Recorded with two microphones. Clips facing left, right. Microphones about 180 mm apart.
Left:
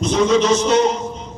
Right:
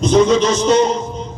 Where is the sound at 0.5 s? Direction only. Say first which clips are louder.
Right 2 dB; 40° right (ahead or behind).